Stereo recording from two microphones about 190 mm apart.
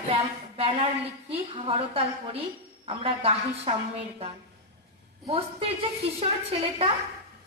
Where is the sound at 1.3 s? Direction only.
30° right (ahead or behind).